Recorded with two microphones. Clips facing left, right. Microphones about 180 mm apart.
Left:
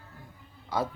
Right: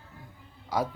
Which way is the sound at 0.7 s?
10° right (ahead or behind).